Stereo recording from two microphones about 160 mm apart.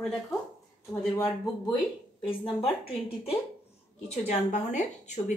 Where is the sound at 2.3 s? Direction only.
35° left (ahead or behind).